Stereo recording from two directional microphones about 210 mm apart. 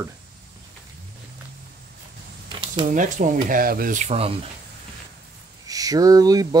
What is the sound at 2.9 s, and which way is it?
Speech, 40° right (ahead or behind).